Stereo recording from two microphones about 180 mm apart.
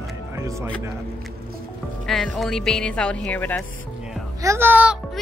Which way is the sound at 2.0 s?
Centre (ahead or behind).